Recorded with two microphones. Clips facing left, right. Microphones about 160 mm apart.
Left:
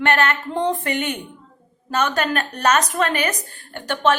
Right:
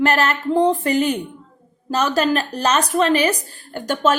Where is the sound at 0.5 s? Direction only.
35° right (ahead or behind).